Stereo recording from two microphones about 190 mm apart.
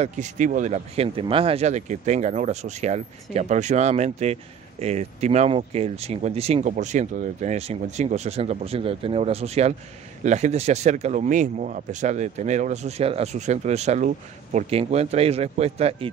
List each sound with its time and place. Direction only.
0.0 s speech: 40° right (ahead or behind)